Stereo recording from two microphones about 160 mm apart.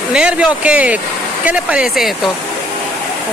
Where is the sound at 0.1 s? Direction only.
5° right (ahead or behind).